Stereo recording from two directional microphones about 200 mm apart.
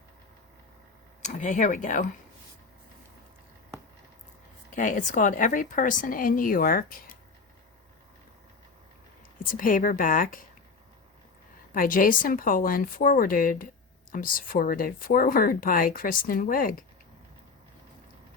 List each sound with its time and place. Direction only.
1.2 s speech: 40° left (ahead or behind)
4.7 s speech: 40° left (ahead or behind)
9.4 s speech: 45° left (ahead or behind)
11.7 s speech: 45° left (ahead or behind)